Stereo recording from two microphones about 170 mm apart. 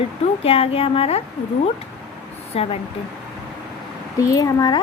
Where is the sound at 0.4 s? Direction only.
35° left (ahead or behind).